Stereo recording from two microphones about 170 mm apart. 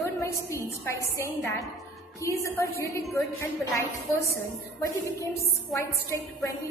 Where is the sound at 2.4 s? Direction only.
20° left (ahead or behind).